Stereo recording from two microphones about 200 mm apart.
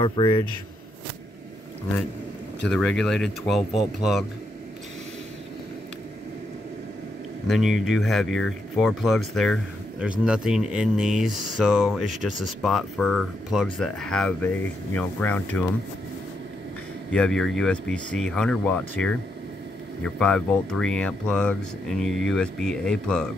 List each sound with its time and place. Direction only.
0.0 s a man's voice: 25° left (ahead or behind)
2.7 s speech: 5° left (ahead or behind)
7.4 s speech: centre (ahead or behind)
17.1 s speech: 5° left (ahead or behind)
20.2 s speech: 5° left (ahead or behind)